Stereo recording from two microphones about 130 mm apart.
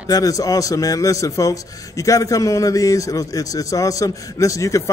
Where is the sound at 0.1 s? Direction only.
25° left (ahead or behind).